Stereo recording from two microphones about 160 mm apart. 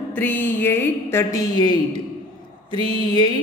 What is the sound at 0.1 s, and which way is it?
A woman's voice, 10° left (ahead or behind).